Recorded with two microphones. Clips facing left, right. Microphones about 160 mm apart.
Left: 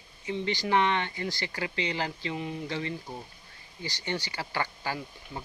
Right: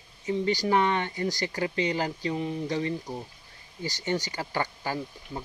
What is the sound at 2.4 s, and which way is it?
Speech, 20° right (ahead or behind).